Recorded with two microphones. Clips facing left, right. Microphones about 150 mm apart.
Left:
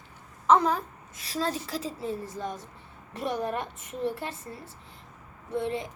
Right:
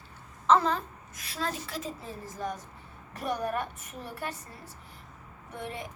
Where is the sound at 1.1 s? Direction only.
35° left (ahead or behind).